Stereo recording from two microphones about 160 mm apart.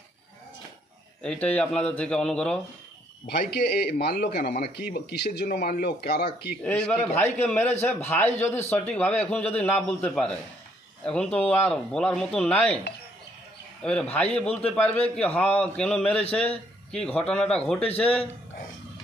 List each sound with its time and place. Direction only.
1.2 s a man's voice: 5° left (ahead or behind)
3.3 s speech: 90° left
4.4 s speech: 75° left (ahead or behind)
6.6 s a man's voice: 5° left (ahead or behind)
14.1 s a man's voice: 5° left (ahead or behind)